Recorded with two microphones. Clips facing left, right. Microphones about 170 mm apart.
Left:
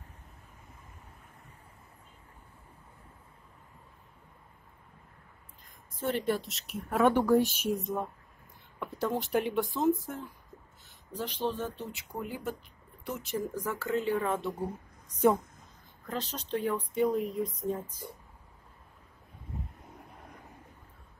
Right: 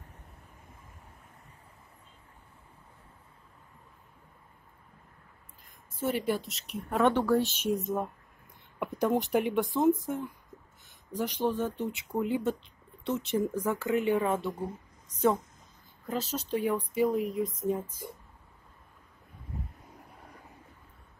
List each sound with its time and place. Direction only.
5.9 s speech: 5° right (ahead or behind)
8.7 s speech: 15° right (ahead or behind)
16.1 s speech: 5° right (ahead or behind)